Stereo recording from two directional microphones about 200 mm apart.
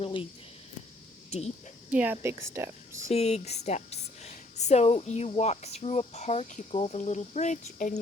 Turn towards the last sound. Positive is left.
turn(degrees=40)  # may be behind; listen again after turning